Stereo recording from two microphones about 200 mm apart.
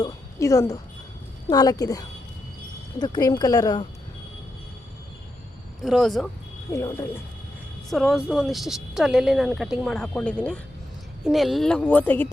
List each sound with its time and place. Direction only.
0.0 s speech: 15° left (ahead or behind)
5.8 s speech: centre (ahead or behind)
6.7 s speech: 15° left (ahead or behind)
7.9 s speech: centre (ahead or behind)